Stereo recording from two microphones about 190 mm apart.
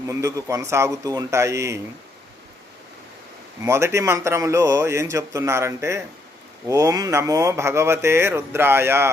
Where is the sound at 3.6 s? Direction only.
15° right (ahead or behind).